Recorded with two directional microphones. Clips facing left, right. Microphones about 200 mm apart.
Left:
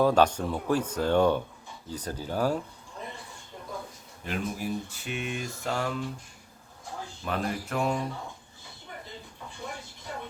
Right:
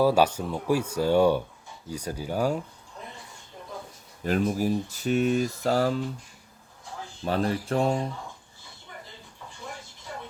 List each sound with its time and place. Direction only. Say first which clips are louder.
0.0 s speech: right 1 dB; 5° right (ahead or behind)
4.2 s speech: right 8 dB; 40° right (ahead or behind)
7.3 s speech: right 5 dB; 35° right (ahead or behind)